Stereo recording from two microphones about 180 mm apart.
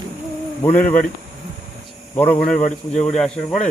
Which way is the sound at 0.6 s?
45° left (ahead or behind).